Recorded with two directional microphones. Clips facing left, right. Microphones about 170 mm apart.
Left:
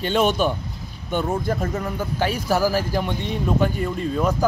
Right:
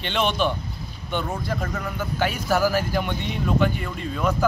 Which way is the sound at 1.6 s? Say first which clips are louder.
Left 3 dB; 30° left (ahead or behind).